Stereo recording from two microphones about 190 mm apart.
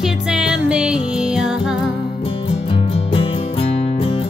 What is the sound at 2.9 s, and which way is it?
Music, 30° left (ahead or behind).